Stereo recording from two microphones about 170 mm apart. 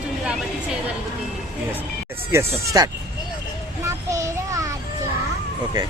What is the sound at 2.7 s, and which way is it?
Speech, 25° right (ahead or behind).